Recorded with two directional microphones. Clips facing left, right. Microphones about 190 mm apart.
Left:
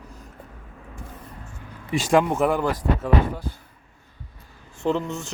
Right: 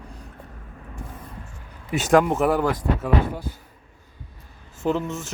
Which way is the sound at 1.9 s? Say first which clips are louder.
Right 2 dB; 5° right (ahead or behind).